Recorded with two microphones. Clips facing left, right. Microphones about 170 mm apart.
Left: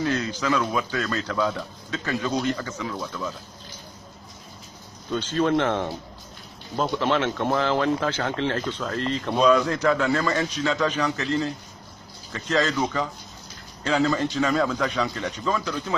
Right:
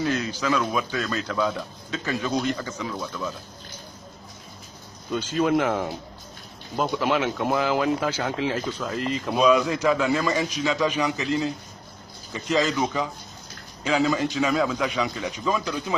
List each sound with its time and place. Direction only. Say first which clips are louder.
0.0 s speech: even; 15° right (ahead or behind)
5.1 s speech: even; 10° right (ahead or behind)